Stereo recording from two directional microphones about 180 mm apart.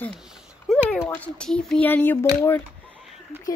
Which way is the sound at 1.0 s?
10° left (ahead or behind).